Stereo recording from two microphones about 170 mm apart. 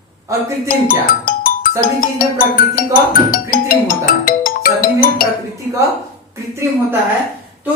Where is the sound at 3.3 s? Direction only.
55° left (ahead or behind).